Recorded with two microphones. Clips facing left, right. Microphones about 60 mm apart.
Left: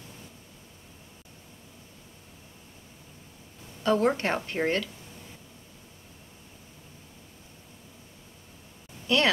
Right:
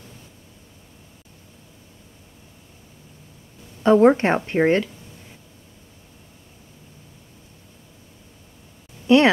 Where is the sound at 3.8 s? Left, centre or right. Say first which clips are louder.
Right 10 dB; right.